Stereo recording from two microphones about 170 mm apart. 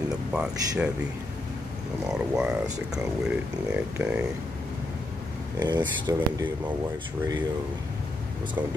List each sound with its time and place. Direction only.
0.3 s speech: 5° right (ahead or behind)
2.0 s speech: 5° right (ahead or behind)
5.6 s speech: 25° right (ahead or behind)